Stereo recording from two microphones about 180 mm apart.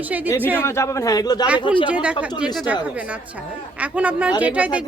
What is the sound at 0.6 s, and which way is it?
Speech, 15° left (ahead or behind).